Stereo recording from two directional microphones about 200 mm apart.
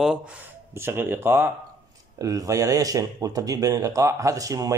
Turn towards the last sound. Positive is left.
turn(degrees=-15)  # may be behind; listen again after turning